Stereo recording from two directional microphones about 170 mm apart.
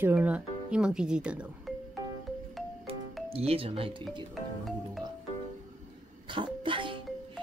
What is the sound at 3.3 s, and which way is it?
Speech, 35° right (ahead or behind).